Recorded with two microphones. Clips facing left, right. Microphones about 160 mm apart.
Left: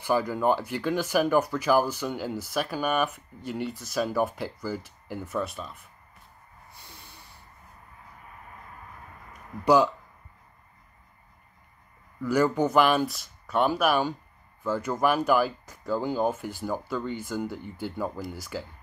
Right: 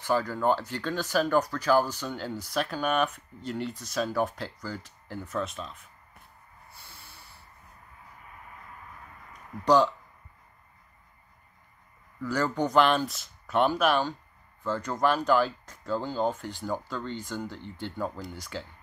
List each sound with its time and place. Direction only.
0.0 s speech: 10° left (ahead or behind)
6.8 s snort: 15° left (ahead or behind)
9.3 s a sound: 10° left (ahead or behind)
12.2 s speech: 10° left (ahead or behind)